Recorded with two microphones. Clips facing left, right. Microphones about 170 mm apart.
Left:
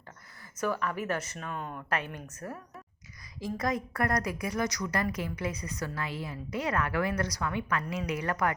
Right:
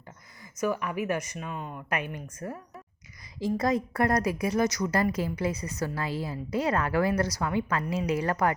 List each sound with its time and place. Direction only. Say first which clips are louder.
0.6 s speech: right 3 dB; 10° right (ahead or behind)
3.4 s a woman's voice: right 5 dB; 30° right (ahead or behind)